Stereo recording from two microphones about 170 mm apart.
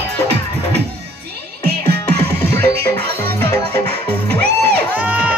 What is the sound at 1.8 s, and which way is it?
Music, 70° right (ahead or behind).